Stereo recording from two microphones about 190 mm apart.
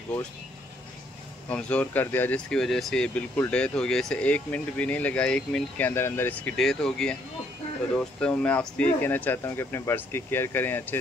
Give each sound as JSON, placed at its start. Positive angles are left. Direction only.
{"t": 1.5, "sound": "speech", "side_deg": 5}